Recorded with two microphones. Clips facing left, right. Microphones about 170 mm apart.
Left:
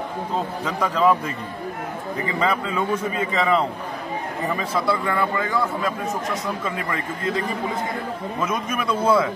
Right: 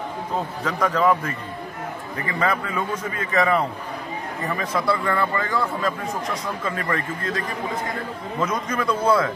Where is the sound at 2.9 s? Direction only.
10° left (ahead or behind).